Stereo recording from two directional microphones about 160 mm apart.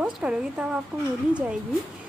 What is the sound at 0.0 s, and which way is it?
A woman's voice, 5° right (ahead or behind).